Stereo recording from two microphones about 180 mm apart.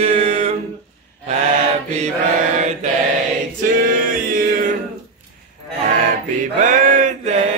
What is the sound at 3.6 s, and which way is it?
Music, 50° right (ahead or behind).